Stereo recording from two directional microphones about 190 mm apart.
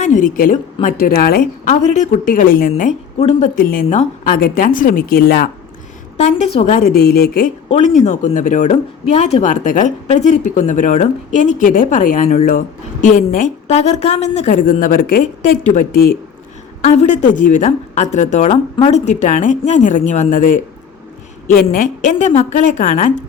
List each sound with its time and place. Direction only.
0.0 s a woman's voice: 40° left (ahead or behind)
1.7 s a woman's voice: 40° left (ahead or behind)
3.2 s speech: 30° left (ahead or behind)
3.5 s a woman's voice: 50° left (ahead or behind)
6.1 s a woman's voice: 35° left (ahead or behind); by 7.5 s 55° left (ahead or behind)
7.7 s speech: 40° left (ahead or behind)
16.8 s a woman's voice: 35° left (ahead or behind)